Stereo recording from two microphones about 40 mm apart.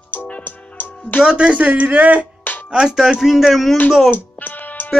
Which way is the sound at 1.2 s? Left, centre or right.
Right.